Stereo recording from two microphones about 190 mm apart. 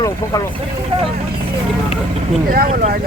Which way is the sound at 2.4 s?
50° right (ahead or behind).